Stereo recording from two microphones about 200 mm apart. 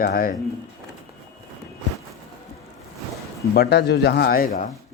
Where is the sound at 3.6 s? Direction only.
55° left (ahead or behind).